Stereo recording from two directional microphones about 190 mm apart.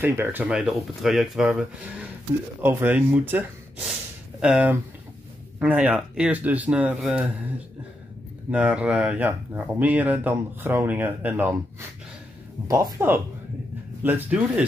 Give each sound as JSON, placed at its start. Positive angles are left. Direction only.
{"t": 0.0, "sound": "speech", "side_deg": -10}
{"t": 12.6, "sound": "speech", "side_deg": -20}